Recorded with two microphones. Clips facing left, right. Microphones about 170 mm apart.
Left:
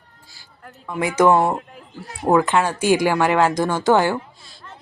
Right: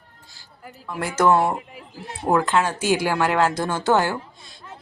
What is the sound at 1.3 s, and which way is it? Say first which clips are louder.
Speech: left 2 dB; centre (ahead or behind).